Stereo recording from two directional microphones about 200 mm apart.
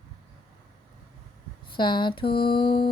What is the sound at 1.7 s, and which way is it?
Music, 25° left (ahead or behind).